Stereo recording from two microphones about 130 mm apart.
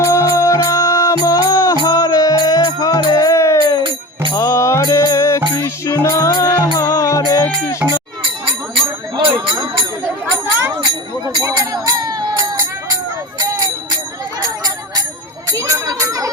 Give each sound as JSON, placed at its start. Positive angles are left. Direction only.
{"t": 0.1, "sound": "music", "side_deg": 20}
{"t": 10.4, "sound": "jingle bell", "side_deg": -15}
{"t": 11.4, "sound": "jingle bell", "side_deg": -30}
{"t": 15.5, "sound": "music", "side_deg": -25}